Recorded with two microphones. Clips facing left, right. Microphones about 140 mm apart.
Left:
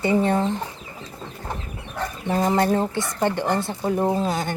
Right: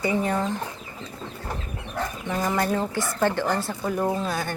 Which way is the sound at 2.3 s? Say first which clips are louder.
Left 5 dB; 25° left (ahead or behind).